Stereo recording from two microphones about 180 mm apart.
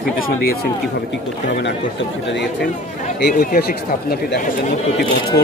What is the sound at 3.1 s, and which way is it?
Speech, 60° left (ahead or behind).